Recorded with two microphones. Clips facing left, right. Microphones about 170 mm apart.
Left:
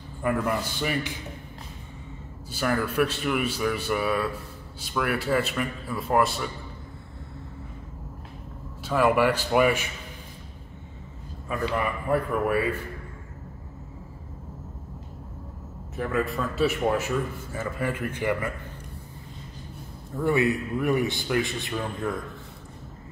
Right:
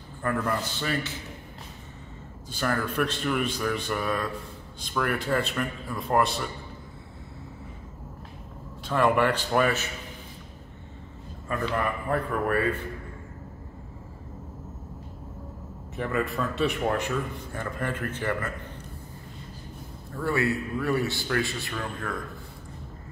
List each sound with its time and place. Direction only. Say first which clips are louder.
0.2 s a man's voice: left 2 dB; 10° left (ahead or behind)
2.5 s a man's voice: left 2 dB; 10° left (ahead or behind)
8.8 s a man's voice: left 1 dB; 5° left (ahead or behind)
11.4 s a man's voice: left 1 dB; 5° left (ahead or behind)
16.0 s a man's voice: left 1 dB; centre (ahead or behind)
20.2 s a man's voice: left 3 dB; 20° left (ahead or behind)